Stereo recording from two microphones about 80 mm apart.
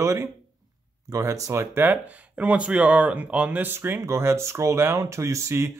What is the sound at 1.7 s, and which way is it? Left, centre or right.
Speech, right.